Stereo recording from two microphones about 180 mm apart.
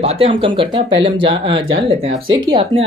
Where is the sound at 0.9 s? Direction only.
90° right.